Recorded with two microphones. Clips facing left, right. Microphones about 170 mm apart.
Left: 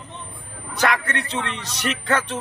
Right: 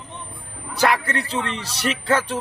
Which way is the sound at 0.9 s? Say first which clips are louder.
Right 2 dB; 30° right (ahead or behind).